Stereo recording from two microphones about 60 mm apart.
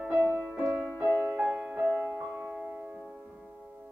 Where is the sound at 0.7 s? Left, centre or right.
Centre.